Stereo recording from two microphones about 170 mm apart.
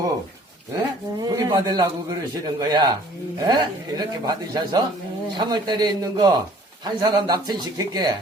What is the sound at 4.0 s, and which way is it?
A man's voice, 25° right (ahead or behind).